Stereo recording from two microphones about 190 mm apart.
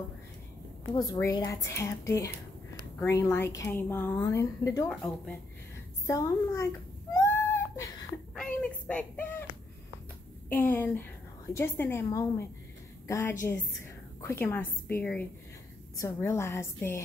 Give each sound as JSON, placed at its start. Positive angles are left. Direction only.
{"t": 0.9, "sound": "a woman's voice", "side_deg": 20}
{"t": 4.8, "sound": "speech", "side_deg": 5}
{"t": 6.0, "sound": "a woman's voice", "side_deg": 15}
{"t": 7.2, "sound": "a sound", "side_deg": 10}
{"t": 10.5, "sound": "a woman's voice", "side_deg": 10}